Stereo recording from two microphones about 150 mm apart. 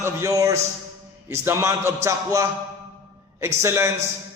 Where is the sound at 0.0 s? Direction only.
20° right (ahead or behind).